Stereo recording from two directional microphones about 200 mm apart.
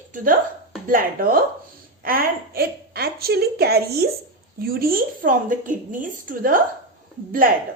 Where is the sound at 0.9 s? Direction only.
45° right (ahead or behind).